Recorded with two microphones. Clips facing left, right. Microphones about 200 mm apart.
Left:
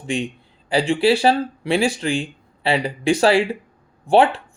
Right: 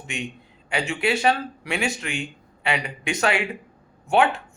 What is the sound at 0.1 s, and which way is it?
Speech, 30° left (ahead or behind).